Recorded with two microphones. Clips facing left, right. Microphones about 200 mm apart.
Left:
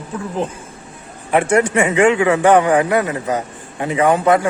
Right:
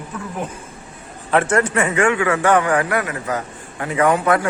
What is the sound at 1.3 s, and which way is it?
A man's voice, 15° left (ahead or behind).